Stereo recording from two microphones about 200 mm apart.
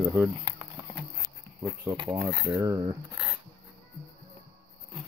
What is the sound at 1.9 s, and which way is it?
Speech, 25° right (ahead or behind).